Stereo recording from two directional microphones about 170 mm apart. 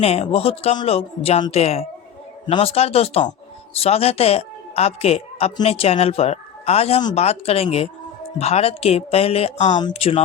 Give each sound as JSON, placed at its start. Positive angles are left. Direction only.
{"t": 0.0, "sound": "speech", "side_deg": 35}